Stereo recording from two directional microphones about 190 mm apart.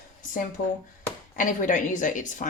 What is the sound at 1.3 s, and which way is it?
A woman's voice, 40° left (ahead or behind).